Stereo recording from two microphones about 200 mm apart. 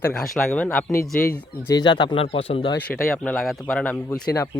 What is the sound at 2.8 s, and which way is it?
Speech, 5° left (ahead or behind).